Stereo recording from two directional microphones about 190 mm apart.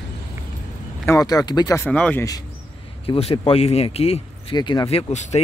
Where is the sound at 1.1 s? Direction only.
20° left (ahead or behind).